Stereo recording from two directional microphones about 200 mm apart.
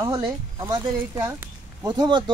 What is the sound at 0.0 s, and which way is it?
Speech, 20° right (ahead or behind).